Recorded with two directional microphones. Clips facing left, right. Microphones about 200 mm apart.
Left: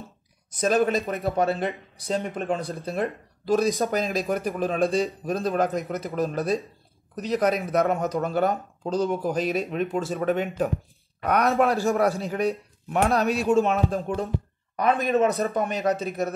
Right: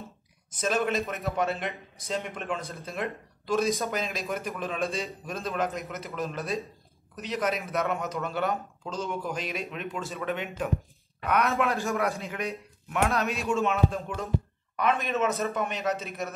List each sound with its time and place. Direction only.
0.5 s speech: 40° left (ahead or behind)